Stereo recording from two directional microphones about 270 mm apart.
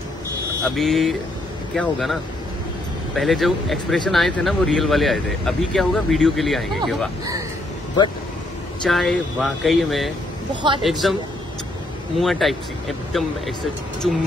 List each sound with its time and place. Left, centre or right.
0.7 s speech: centre
3.2 s speech: centre
8.8 s speech: centre
10.5 s a man's voice: centre
10.8 s speech: centre
12.2 s speech: centre